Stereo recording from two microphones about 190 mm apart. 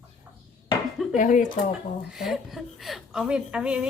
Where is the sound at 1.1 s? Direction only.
40° left (ahead or behind).